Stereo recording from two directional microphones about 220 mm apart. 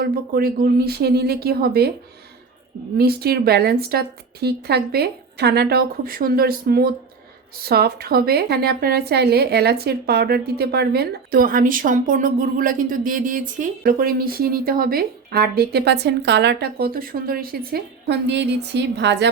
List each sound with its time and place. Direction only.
0.0 s a woman's voice: 45° right (ahead or behind)
3.0 s a woman's voice: 45° right (ahead or behind)